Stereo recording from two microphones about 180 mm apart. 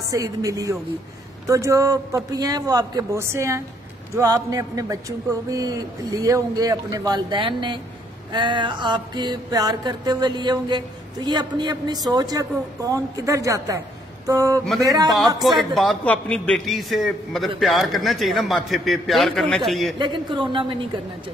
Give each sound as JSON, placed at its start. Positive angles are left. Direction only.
{"t": 0.1, "sound": "music", "side_deg": -20}
{"t": 15.0, "sound": "a man's voice", "side_deg": 0}
{"t": 20.0, "sound": "music", "side_deg": -25}